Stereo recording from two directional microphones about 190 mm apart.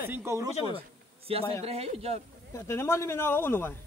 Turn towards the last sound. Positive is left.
turn(degrees=10)  # may be behind; listen again after turning